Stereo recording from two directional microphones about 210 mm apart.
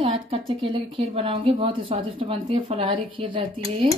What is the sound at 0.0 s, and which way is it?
A woman's voice, 25° right (ahead or behind).